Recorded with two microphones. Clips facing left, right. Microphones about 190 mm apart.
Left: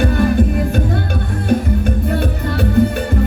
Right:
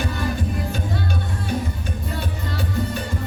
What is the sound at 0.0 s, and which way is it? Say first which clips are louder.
Music: left 11 dB; 60° left (ahead or behind).